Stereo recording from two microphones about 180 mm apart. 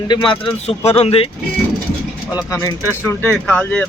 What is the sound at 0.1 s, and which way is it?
Speech, 30° left (ahead or behind).